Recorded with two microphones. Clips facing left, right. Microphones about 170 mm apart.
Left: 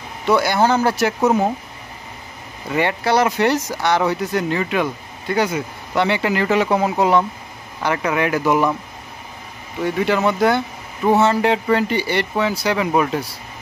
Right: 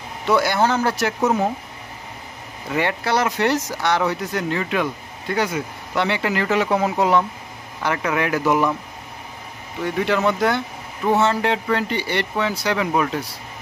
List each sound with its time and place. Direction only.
0.3 s speech: centre (ahead or behind)
2.7 s speech: centre (ahead or behind)
9.9 s speech: 5° left (ahead or behind)